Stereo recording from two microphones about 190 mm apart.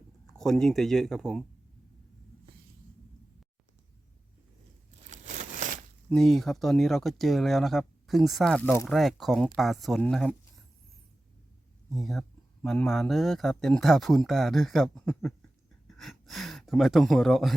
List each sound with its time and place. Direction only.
0.3 s speech: centre (ahead or behind)
5.1 s a sound: 40° right (ahead or behind)
6.1 s speech: centre (ahead or behind)
8.9 s speech: centre (ahead or behind)
11.9 s speech: centre (ahead or behind)